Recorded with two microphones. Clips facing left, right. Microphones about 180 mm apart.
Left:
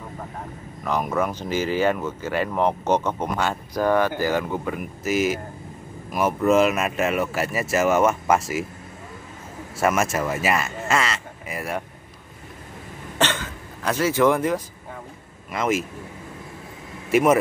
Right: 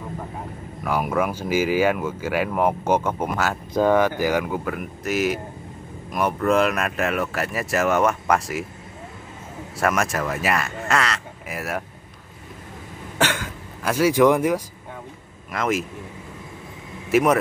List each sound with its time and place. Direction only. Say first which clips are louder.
0.8 s speech: right 1 dB; 10° right (ahead or behind)
3.7 s speech: right 3 dB; 20° right (ahead or behind); by 8.6 s centre (ahead or behind)
9.8 s speech: left 1 dB; centre (ahead or behind)
13.2 s speech: right 1 dB; 10° right (ahead or behind)
15.5 s speech: even; centre (ahead or behind)
17.1 s speech: even; centre (ahead or behind)